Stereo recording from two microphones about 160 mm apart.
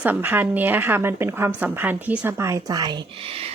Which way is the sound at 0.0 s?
10° right (ahead or behind).